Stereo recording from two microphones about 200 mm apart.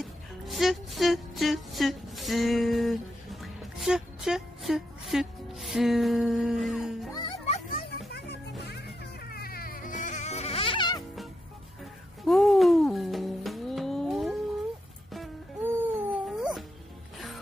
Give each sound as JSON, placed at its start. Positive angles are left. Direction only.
{"t": 0.0, "sound": "music", "side_deg": 0}
{"t": 7.1, "sound": "music", "side_deg": 20}
{"t": 7.4, "sound": "music", "side_deg": 35}
{"t": 8.1, "sound": "music", "side_deg": 55}
{"t": 11.8, "sound": "music", "side_deg": 0}